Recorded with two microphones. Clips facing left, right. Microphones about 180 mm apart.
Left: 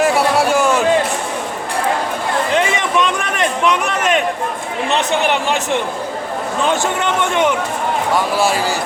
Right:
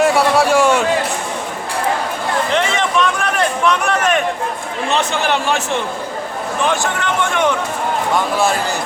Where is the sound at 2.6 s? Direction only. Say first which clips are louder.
Even; 15° left (ahead or behind).